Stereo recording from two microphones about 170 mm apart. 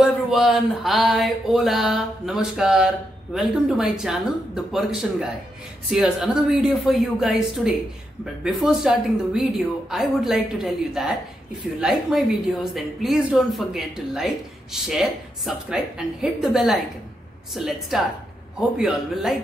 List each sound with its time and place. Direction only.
0.0 s a woman's voice: centre (ahead or behind)